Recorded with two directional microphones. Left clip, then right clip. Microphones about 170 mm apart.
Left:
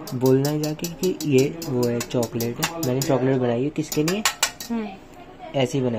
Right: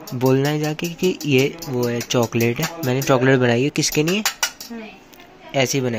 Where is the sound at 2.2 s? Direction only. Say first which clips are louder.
Right 5 dB; 25° right (ahead or behind).